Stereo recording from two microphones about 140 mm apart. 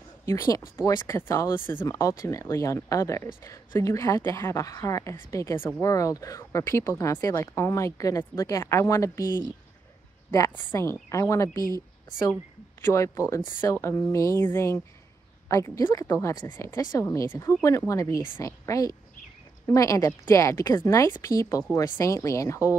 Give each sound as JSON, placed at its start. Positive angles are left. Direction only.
{"t": 0.2, "sound": "speech", "side_deg": 20}
{"t": 10.3, "sound": "speech", "side_deg": 20}
{"t": 12.8, "sound": "speech", "side_deg": 20}